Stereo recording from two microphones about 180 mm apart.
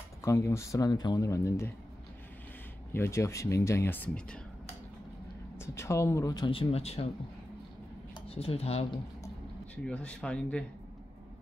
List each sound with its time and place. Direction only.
0.2 s speech: 15° left (ahead or behind)
2.9 s speech: 15° left (ahead or behind)
5.6 s speech: 15° left (ahead or behind); by 7.1 s 35° left (ahead or behind)
8.4 s speech: 35° left (ahead or behind)
9.8 s speech: 5° left (ahead or behind)